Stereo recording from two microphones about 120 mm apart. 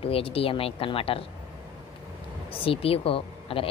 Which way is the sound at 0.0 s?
50° left (ahead or behind).